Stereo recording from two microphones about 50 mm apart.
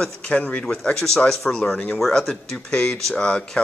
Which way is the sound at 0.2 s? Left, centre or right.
Left.